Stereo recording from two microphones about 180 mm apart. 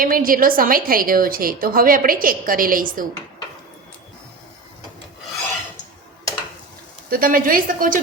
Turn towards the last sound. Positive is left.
turn(degrees=-50)  # may be behind; listen again after turning